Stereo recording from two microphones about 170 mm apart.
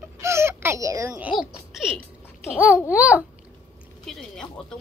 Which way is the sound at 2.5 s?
5° right (ahead or behind).